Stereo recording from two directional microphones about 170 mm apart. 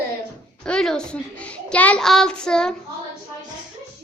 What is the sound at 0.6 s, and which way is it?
A child's voice, 5° left (ahead or behind).